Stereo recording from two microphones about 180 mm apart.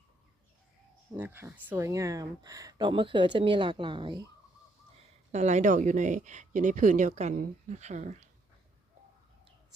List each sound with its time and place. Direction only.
1.1 s speech: 10° right (ahead or behind); by 4.2 s 25° right (ahead or behind)
5.3 s speech: 40° right (ahead or behind)